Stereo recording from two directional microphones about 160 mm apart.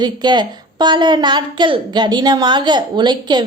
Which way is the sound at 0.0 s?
25° right (ahead or behind).